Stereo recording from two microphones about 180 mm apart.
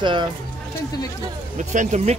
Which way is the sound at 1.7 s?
40° right (ahead or behind).